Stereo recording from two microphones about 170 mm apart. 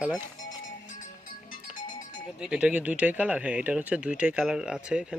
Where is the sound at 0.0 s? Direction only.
5° right (ahead or behind).